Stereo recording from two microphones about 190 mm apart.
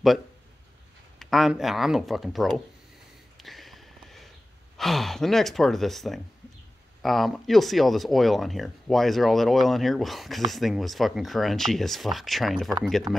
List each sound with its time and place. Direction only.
1.2 s speech: centre (ahead or behind)
3.3 s a sound: centre (ahead or behind)
4.7 s speech: centre (ahead or behind)